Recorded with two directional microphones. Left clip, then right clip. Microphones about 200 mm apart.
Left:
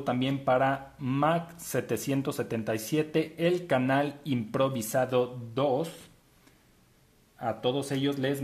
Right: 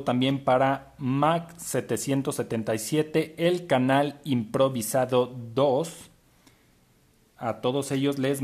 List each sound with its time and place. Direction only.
0.0 s speech: 15° right (ahead or behind)
7.3 s speech: 25° right (ahead or behind)